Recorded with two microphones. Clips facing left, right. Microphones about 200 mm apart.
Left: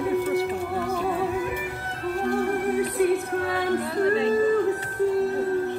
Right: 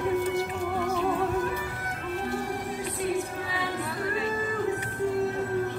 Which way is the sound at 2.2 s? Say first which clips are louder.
Left 10 dB; 55° left (ahead or behind).